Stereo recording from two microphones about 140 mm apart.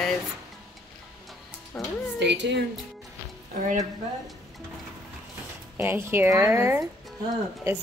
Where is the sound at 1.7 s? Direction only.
10° left (ahead or behind).